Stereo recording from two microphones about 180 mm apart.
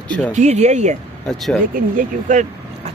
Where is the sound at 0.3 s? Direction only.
40° right (ahead or behind).